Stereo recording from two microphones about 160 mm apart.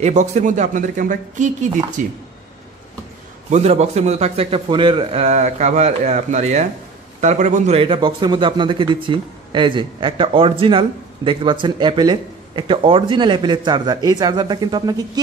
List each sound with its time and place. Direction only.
0.0 s speech: 45° right (ahead or behind)
3.4 s a man's voice: 45° right (ahead or behind)
5.2 s a man's voice: 45° right (ahead or behind); by 15.0 s 25° right (ahead or behind)